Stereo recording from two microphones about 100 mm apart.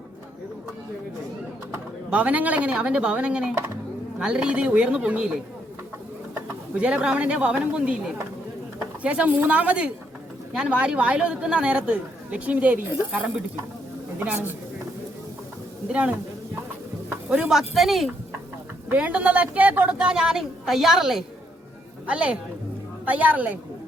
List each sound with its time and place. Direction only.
2.0 s a woman's voice: 15° right (ahead or behind)
6.7 s a woman's voice: 10° right (ahead or behind)
9.0 s a woman's voice: 15° right (ahead or behind)
14.2 s a woman's voice: 20° right (ahead or behind)
15.9 s a woman's voice: 10° right (ahead or behind)
17.2 s speech: 10° right (ahead or behind)
18.9 s a woman's voice: 15° right (ahead or behind)